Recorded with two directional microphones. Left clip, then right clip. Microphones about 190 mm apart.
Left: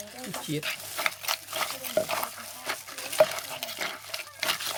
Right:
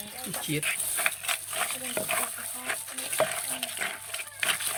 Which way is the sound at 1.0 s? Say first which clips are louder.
Left 1 dB; 60° left (ahead or behind).